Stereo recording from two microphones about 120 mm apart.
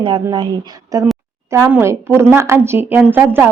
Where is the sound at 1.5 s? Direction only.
20° right (ahead or behind).